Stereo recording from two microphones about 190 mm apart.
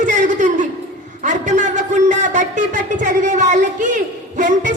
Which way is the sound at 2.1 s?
40° right (ahead or behind).